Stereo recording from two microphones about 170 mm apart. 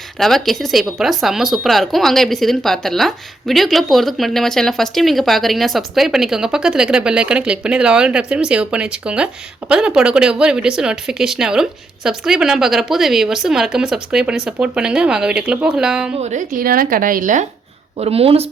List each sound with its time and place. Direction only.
0.2 s speech: centre (ahead or behind)
16.2 s a woman's voice: 50° right (ahead or behind)
18.0 s speech: 35° right (ahead or behind)